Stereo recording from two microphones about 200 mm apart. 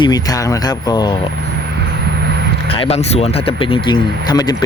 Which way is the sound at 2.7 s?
30° left (ahead or behind).